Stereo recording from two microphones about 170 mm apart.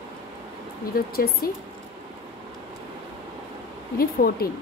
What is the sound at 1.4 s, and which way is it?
Speech, 60° left (ahead or behind).